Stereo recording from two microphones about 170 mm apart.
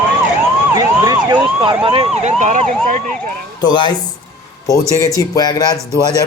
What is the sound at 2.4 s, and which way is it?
Emergency vehicle, 45° right (ahead or behind).